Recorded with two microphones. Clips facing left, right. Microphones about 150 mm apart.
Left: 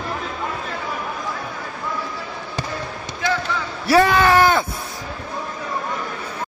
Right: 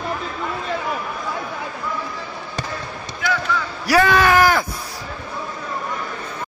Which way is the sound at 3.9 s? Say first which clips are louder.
Left 1 dB; 25° left (ahead or behind).